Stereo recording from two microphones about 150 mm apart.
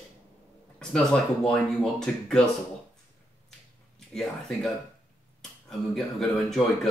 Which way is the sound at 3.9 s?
5° left (ahead or behind).